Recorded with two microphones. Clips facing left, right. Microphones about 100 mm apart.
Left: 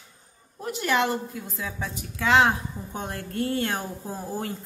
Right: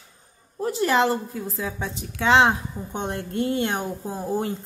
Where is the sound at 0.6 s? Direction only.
30° right (ahead or behind).